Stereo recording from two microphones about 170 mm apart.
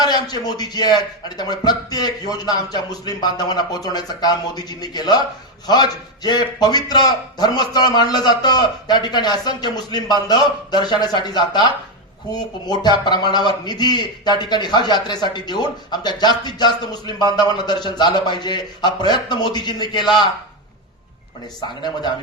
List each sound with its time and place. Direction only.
0.0 s a man's voice: 25° left (ahead or behind)
21.8 s a man's voice: 25° left (ahead or behind)